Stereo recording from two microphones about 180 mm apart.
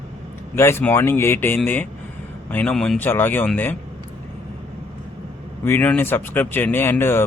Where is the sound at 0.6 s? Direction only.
15° left (ahead or behind).